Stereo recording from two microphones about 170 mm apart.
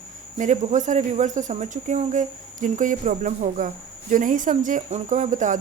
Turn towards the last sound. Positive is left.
turn(degrees=-50)  # may be behind; listen again after turning